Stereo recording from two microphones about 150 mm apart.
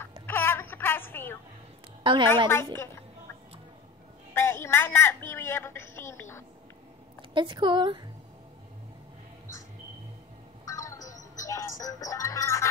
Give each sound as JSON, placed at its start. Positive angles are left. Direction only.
{"t": 0.3, "sound": "a sound", "side_deg": 15}
{"t": 2.0, "sound": "a woman's voice", "side_deg": -35}
{"t": 2.4, "sound": "a woman's voice", "side_deg": 15}
{"t": 4.3, "sound": "a woman's voice", "side_deg": 15}
{"t": 7.3, "sound": "a woman's voice", "side_deg": -30}
{"t": 10.6, "sound": "music", "side_deg": 20}